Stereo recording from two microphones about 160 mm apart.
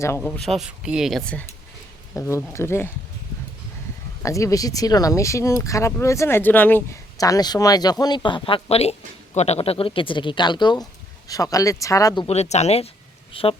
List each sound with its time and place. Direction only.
0.2 s speech: centre (ahead or behind)
2.1 s speech: 20° left (ahead or behind)
4.2 s speech: 20° left (ahead or behind)
12.3 s speech: 45° left (ahead or behind)